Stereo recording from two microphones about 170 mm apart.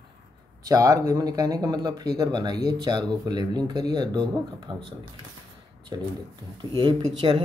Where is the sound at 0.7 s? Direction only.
20° right (ahead or behind).